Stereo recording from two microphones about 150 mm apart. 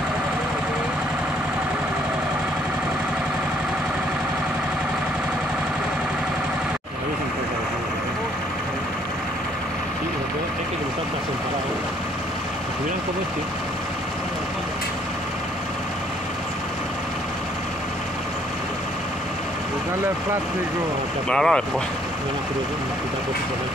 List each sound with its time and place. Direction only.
21.3 s speech: 5° left (ahead or behind)